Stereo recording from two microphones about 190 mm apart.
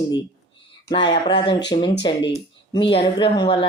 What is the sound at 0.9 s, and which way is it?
Speech, 25° left (ahead or behind).